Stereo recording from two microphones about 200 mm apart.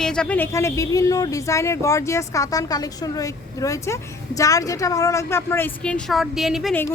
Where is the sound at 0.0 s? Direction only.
5° left (ahead or behind).